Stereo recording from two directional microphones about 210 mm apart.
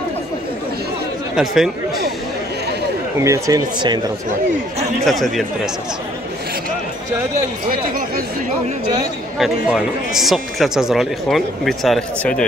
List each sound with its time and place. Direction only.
1.3 s speech: centre (ahead or behind)
3.2 s speech: 15° right (ahead or behind)
5.0 s speech: centre (ahead or behind)
9.4 s speech: centre (ahead or behind)